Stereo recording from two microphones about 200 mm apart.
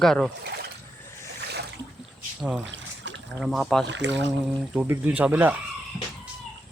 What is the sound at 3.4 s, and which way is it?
Speech, centre (ahead or behind).